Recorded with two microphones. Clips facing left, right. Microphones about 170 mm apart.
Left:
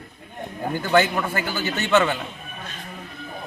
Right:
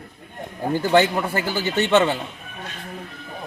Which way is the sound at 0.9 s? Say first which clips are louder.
Right 1 dB; 30° right (ahead or behind).